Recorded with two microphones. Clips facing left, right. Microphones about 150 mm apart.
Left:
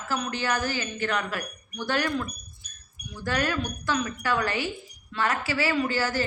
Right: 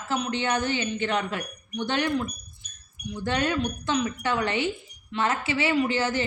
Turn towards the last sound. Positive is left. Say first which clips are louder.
# right 2 dB
turn(degrees=-20)  # may be behind; listen again after turning